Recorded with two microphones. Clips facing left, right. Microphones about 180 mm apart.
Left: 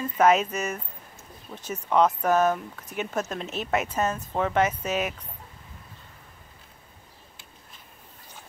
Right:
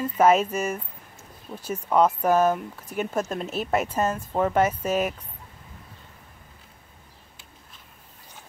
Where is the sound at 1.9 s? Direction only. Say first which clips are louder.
Right 1 dB; 5° right (ahead or behind).